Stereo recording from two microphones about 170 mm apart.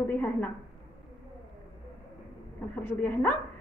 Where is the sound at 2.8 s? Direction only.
10° left (ahead or behind).